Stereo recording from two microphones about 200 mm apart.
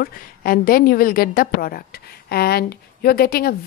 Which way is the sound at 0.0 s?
45° left (ahead or behind).